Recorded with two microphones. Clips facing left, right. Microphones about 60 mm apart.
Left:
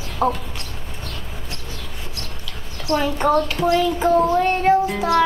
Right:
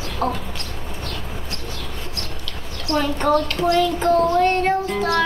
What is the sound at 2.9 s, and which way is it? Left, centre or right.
Speech, centre.